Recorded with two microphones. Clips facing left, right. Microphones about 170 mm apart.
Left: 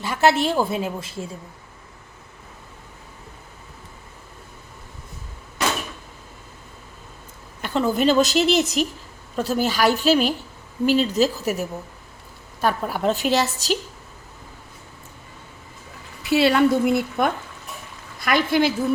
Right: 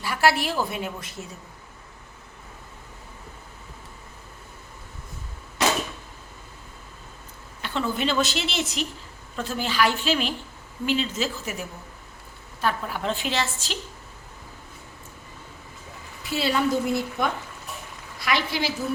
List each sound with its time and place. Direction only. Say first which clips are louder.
0.0 s a woman's voice: left 4 dB; 25° left (ahead or behind)
7.6 s a woman's voice: left 7 dB; 40° left (ahead or behind)
12.6 s a woman's voice: left 5 dB; 45° left (ahead or behind)
16.2 s a woman's voice: left 7 dB; 70° left (ahead or behind); by 18.7 s 50° left (ahead or behind)